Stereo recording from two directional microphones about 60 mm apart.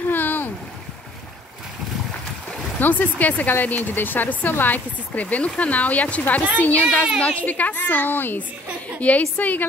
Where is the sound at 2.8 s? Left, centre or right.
Left.